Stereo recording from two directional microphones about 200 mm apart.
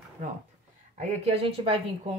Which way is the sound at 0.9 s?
35° right (ahead or behind).